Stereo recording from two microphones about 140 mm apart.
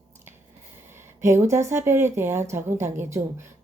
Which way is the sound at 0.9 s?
20° right (ahead or behind).